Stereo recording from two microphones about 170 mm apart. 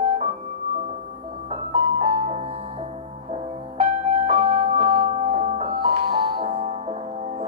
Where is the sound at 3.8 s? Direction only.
35° right (ahead or behind).